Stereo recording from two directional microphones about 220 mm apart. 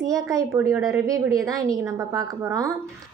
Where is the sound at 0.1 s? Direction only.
15° right (ahead or behind).